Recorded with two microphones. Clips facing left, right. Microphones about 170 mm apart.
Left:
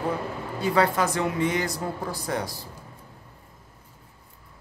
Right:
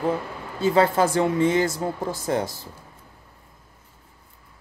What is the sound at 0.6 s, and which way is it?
Speech, 25° right (ahead or behind).